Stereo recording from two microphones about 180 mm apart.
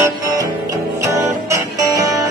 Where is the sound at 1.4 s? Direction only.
20° right (ahead or behind).